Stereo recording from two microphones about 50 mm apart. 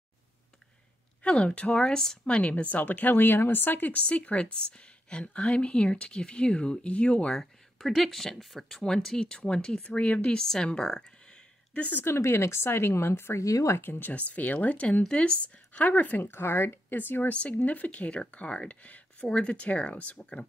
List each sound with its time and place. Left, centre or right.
1.2 s a woman's voice: left
3.9 s a woman's voice: left
7.3 s speech: centre
9.8 s a woman's voice: left
10.3 s speech: centre
10.7 s a sound: centre
12.0 s speech: left
13.7 s speech: left
14.1 s a woman's voice: left
16.2 s speech: left
17.3 s a woman's voice: left
19.2 s a woman's voice: centre